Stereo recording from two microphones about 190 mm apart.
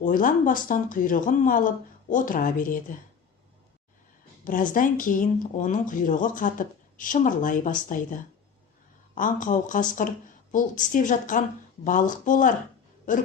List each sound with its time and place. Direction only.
0.0 s speech: 45° left (ahead or behind)
4.4 s speech: 45° left (ahead or behind)